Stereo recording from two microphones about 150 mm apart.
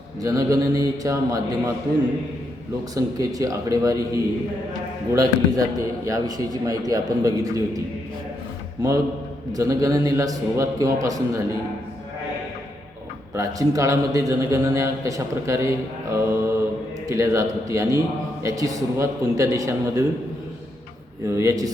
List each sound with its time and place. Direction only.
0.2 s a man's voice: 25° right (ahead or behind)
2.9 s a man's voice: 25° right (ahead or behind)
8.8 s a man's voice: 25° right (ahead or behind)
13.3 s a man's voice: 20° right (ahead or behind)
21.2 s a man's voice: 20° right (ahead or behind)